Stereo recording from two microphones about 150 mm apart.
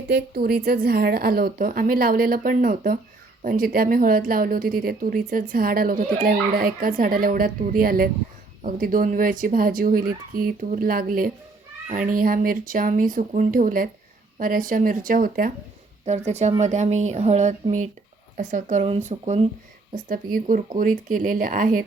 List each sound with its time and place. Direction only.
0.1 s a woman's voice: 90° right; by 11.3 s 70° right (ahead or behind)
11.9 s speech: 60° right (ahead or behind)
16.0 s speech: 50° right (ahead or behind)
18.9 s speech: 45° right (ahead or behind)
20.1 s speech: 65° right (ahead or behind)